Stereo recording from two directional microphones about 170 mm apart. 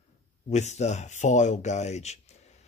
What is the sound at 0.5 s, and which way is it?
Speech, 40° left (ahead or behind).